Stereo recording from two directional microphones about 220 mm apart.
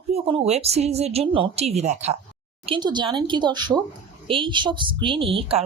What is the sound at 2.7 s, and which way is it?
Speech, 20° right (ahead or behind).